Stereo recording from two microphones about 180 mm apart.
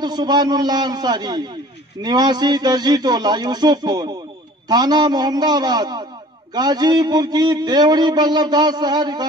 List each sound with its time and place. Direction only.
0.0 s a man's voice: 25° right (ahead or behind)